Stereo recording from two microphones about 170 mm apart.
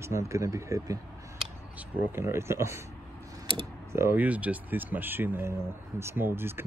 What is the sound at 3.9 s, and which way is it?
Speech, 15° right (ahead or behind).